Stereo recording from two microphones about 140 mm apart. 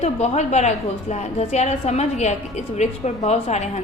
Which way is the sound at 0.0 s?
50° left (ahead or behind).